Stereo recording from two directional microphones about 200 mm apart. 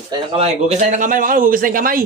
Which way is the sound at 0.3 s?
35° right (ahead or behind).